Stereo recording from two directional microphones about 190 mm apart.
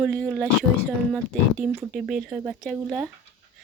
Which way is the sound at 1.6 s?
5° right (ahead or behind).